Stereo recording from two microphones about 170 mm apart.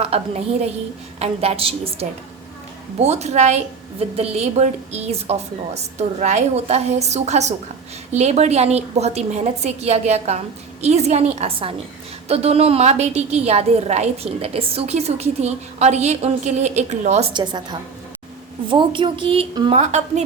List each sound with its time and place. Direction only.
0.0 s a woman's voice: 35° right (ahead or behind)
17.3 s a woman's voice: 25° right (ahead or behind)
19.8 s a woman's voice: 40° right (ahead or behind)